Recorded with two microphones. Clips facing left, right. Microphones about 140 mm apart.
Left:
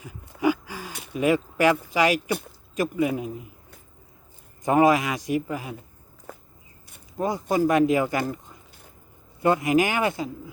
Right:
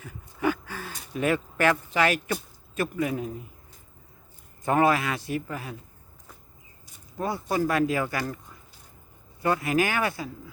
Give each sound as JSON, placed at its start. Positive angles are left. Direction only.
{"t": 0.0, "sound": "a sound", "side_deg": 10}
{"t": 1.1, "sound": "speech", "side_deg": 15}
{"t": 4.6, "sound": "a man's voice", "side_deg": 15}
{"t": 7.2, "sound": "speech", "side_deg": 20}